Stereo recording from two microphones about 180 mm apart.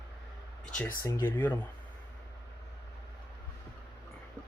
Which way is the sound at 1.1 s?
10° left (ahead or behind).